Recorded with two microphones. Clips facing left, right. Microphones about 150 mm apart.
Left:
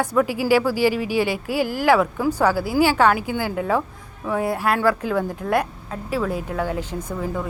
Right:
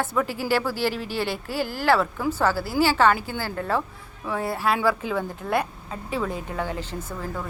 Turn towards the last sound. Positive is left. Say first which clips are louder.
# left 5 dB
turn(degrees=15)  # may be behind; listen again after turning